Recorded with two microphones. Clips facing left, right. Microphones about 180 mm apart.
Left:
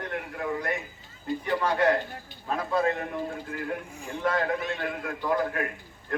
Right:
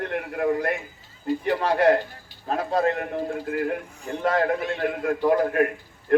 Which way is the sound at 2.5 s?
35° right (ahead or behind).